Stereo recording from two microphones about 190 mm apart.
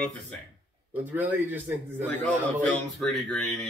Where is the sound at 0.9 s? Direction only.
10° right (ahead or behind).